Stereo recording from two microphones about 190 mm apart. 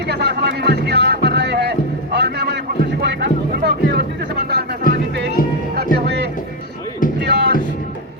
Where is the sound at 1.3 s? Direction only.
65° right (ahead or behind).